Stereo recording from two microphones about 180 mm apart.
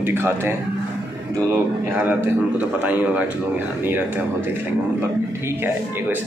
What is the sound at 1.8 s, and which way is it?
Speech, 10° right (ahead or behind).